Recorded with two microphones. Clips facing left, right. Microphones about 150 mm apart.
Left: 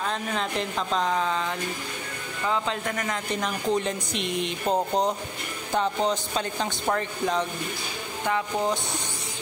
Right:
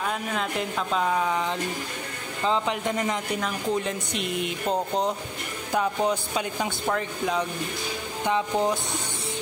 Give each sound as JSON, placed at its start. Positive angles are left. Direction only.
{"t": 0.0, "sound": "speech", "side_deg": -5}
{"t": 3.3, "sound": "speech", "side_deg": 0}
{"t": 8.3, "sound": "speech", "side_deg": -20}